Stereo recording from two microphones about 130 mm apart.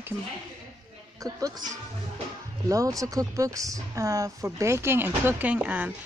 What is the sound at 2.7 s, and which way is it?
Speech, 25° right (ahead or behind).